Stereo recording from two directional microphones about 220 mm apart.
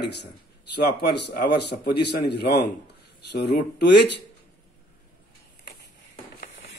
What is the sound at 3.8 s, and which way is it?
Speech, 50° left (ahead or behind).